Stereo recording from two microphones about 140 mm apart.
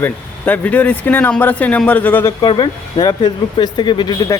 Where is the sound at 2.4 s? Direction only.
35° left (ahead or behind).